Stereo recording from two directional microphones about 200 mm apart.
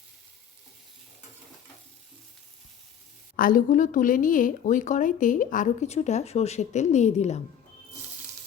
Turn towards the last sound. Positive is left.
turn(degrees=35)  # may be behind; listen again after turning